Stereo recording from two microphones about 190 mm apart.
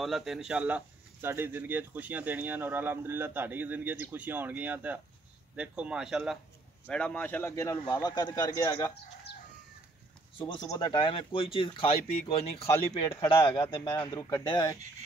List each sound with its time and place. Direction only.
0.0 s a man's voice: centre (ahead or behind); by 8.9 s 15° left (ahead or behind)
10.4 s speech: 20° left (ahead or behind)
12.7 s speech: 20° left (ahead or behind)